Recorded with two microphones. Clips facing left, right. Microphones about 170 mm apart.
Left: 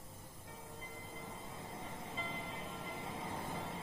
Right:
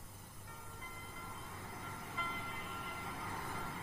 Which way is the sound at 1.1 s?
20° left (ahead or behind).